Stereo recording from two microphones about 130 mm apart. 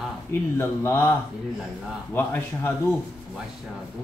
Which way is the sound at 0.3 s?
20° left (ahead or behind).